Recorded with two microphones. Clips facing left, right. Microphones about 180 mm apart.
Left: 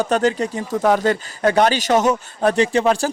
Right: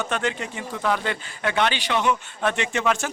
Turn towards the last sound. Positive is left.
turn(degrees=35)  # may be behind; listen again after turning